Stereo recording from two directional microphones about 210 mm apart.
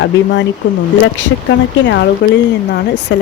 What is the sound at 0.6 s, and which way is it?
Speech, 60° left (ahead or behind).